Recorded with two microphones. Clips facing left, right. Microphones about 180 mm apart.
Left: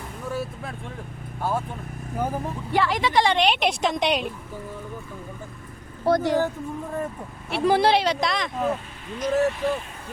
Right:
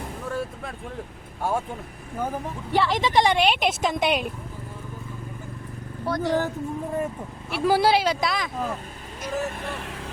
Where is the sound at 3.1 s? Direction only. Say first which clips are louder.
Right 1 dB; 15° right (ahead or behind).